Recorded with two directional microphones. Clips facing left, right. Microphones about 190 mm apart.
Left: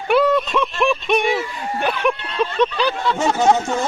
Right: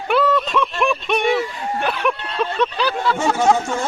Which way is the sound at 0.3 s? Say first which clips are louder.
Left 1 dB; 5° left (ahead or behind).